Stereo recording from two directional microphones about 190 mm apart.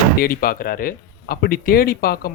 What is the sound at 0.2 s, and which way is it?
Speech, 50° left (ahead or behind).